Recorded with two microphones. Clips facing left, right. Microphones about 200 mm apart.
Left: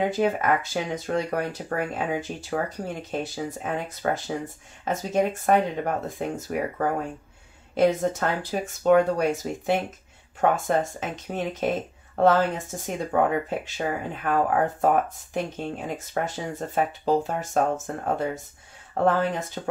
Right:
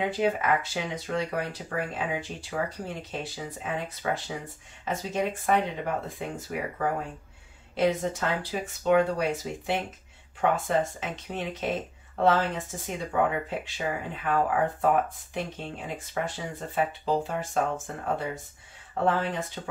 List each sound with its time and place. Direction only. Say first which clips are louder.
0.1 s speech: left 3 dB; 45° left (ahead or behind)